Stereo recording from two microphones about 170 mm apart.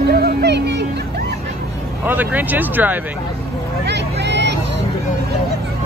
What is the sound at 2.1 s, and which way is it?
Speech, 10° right (ahead or behind).